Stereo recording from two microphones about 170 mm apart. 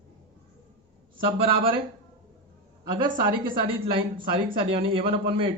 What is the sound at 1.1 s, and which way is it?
Speech, 30° right (ahead or behind).